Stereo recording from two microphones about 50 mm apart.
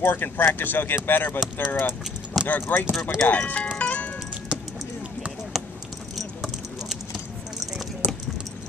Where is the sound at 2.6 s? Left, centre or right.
Left.